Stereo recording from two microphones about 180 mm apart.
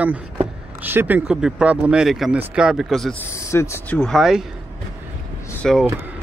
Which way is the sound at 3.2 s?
15° left (ahead or behind).